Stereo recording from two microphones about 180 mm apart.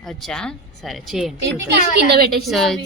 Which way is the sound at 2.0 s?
65° right (ahead or behind).